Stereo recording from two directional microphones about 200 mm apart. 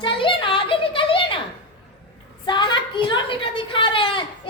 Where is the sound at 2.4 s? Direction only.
25° left (ahead or behind).